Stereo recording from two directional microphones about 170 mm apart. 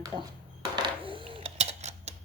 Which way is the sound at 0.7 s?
30° right (ahead or behind).